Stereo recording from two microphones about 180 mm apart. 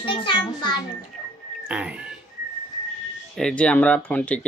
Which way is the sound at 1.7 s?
5° right (ahead or behind).